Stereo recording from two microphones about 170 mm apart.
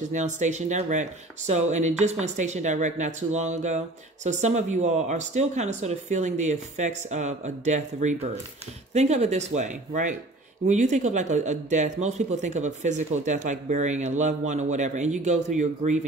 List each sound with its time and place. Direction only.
0.1 s speech: 45° right (ahead or behind)